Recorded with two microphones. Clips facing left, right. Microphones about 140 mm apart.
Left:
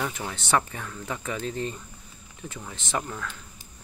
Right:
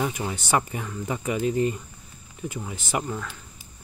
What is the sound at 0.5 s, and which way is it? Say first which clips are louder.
Speech: even; 15° right (ahead or behind).